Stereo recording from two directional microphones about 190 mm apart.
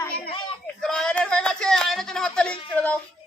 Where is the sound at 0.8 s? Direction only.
Centre (ahead or behind).